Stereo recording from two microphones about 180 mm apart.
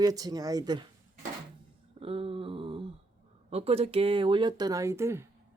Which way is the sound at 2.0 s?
30° right (ahead or behind).